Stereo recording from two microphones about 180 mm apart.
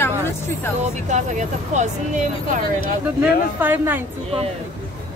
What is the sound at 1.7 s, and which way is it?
Speech, 40° right (ahead or behind).